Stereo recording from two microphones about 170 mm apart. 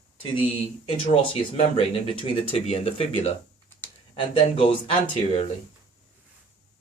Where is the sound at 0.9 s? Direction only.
30° left (ahead or behind).